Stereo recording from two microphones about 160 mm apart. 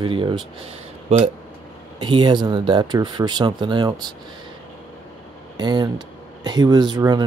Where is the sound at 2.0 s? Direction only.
30° right (ahead or behind).